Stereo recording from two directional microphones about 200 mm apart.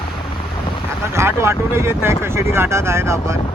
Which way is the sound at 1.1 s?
15° right (ahead or behind).